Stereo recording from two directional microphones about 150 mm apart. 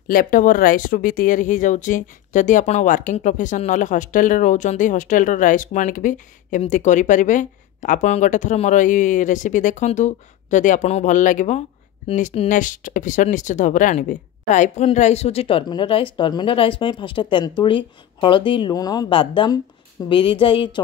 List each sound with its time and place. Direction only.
0.1 s speech: 65° left (ahead or behind); by 20.8 s 35° left (ahead or behind)